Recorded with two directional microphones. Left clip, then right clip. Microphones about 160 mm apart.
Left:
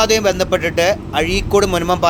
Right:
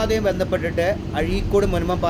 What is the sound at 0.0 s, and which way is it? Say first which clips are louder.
A man's voice: left 6 dB; 20° left (ahead or behind).